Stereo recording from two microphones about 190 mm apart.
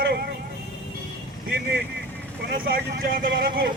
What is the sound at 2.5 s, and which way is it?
Speech, 50° right (ahead or behind).